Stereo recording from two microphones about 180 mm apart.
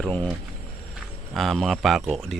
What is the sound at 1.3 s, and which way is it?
Speech, centre (ahead or behind).